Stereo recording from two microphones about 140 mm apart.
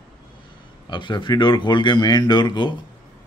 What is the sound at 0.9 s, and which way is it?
A man's voice, 35° left (ahead or behind).